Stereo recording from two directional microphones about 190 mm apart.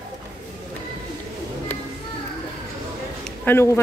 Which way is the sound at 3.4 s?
15° left (ahead or behind).